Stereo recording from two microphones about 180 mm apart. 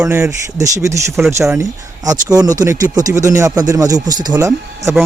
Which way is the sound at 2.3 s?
20° right (ahead or behind).